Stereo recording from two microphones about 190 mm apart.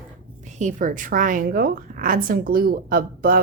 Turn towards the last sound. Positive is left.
turn(degrees=-50)  # may be behind; listen again after turning